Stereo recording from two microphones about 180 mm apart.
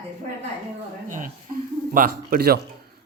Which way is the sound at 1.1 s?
50° right (ahead or behind).